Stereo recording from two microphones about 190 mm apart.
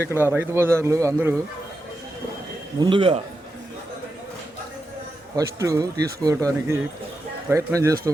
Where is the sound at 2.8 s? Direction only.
25° right (ahead or behind).